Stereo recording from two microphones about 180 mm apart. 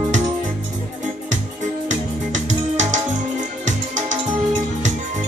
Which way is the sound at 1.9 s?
45° right (ahead or behind).